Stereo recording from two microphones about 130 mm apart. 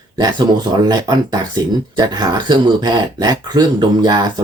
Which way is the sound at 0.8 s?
30° right (ahead or behind).